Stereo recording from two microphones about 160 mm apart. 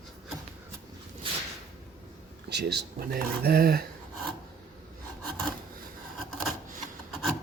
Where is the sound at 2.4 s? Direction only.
90° right; by 3.8 s 75° right (ahead or behind).